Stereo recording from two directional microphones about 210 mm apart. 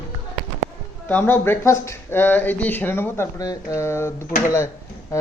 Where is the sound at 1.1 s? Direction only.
10° left (ahead or behind).